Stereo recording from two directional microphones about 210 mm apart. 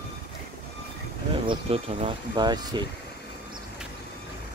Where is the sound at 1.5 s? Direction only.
30° right (ahead or behind).